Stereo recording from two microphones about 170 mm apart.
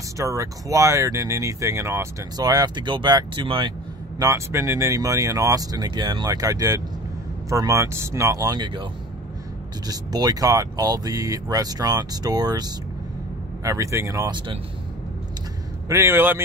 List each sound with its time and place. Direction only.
0.2 s speech: 20° right (ahead or behind)
4.2 s speech: 20° right (ahead or behind)
9.8 s speech: 25° right (ahead or behind)
15.9 s a man's voice: 15° right (ahead or behind)